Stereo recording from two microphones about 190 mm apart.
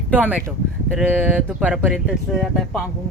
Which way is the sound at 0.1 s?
10° right (ahead or behind).